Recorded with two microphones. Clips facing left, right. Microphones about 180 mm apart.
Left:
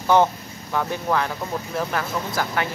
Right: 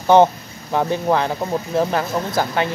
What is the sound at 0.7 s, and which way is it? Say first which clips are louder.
Speech: right 5 dB; 25° right (ahead or behind).